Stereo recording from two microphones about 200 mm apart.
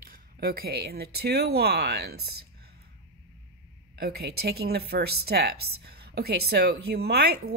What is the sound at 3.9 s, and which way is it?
Speech, 50° right (ahead or behind).